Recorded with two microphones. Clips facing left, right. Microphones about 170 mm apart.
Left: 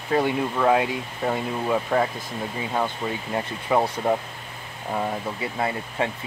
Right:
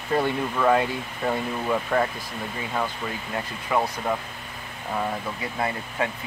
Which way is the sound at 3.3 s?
30° left (ahead or behind).